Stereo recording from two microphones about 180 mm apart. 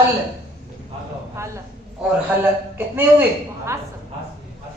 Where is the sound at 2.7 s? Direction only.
10° right (ahead or behind).